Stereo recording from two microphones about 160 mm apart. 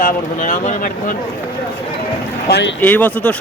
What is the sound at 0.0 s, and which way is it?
Speech, 55° left (ahead or behind).